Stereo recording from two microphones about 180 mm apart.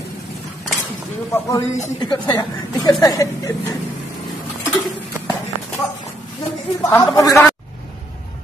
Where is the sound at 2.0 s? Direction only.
20° left (ahead or behind).